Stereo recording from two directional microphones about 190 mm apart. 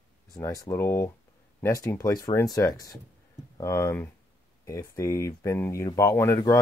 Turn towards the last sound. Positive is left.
turn(degrees=15)  # may be behind; listen again after turning